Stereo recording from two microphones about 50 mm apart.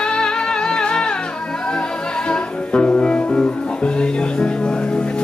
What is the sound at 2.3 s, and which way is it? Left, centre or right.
Music, left.